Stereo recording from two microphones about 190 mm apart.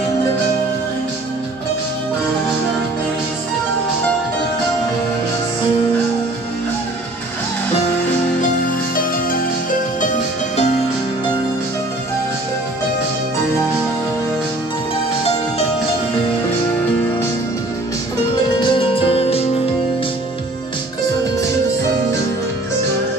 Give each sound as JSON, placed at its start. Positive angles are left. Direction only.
{"t": 8.9, "sound": "music", "side_deg": 45}
{"t": 18.6, "sound": "music", "side_deg": 25}